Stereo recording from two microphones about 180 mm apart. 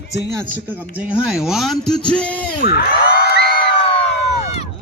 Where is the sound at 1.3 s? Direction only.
Centre (ahead or behind).